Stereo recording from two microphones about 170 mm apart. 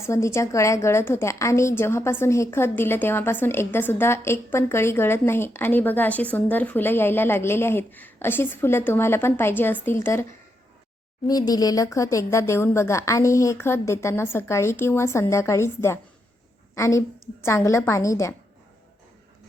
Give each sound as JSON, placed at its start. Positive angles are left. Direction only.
{"t": 0.0, "sound": "a woman's voice", "side_deg": 15}
{"t": 11.3, "sound": "a woman's voice", "side_deg": 20}